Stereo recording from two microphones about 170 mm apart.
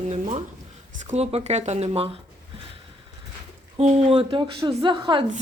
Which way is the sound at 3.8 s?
35° right (ahead or behind).